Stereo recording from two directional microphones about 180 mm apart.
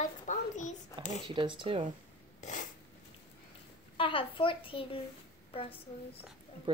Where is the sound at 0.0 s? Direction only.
45° left (ahead or behind).